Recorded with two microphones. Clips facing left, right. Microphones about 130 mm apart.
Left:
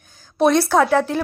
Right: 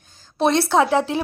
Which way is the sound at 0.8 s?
20° right (ahead or behind).